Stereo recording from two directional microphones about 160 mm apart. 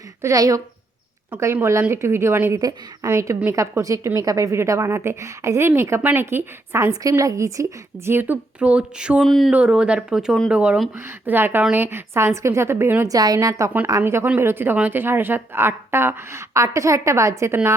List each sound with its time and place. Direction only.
0.2 s a woman's voice: 20° right (ahead or behind)